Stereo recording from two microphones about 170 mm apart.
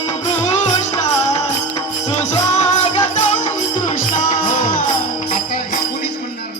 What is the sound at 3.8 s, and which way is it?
Music, 50° left (ahead or behind).